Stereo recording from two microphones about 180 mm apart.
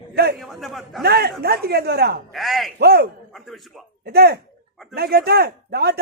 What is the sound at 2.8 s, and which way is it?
Speech, 60° right (ahead or behind).